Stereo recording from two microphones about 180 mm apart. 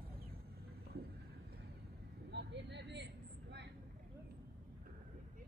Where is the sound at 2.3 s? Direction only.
70° right (ahead or behind).